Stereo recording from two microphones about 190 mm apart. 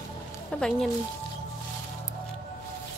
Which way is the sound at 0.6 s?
5° left (ahead or behind).